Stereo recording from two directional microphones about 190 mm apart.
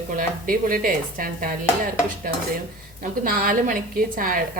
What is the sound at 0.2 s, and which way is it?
Speech, 45° right (ahead or behind).